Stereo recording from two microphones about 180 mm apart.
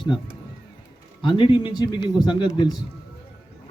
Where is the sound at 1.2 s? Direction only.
25° left (ahead or behind).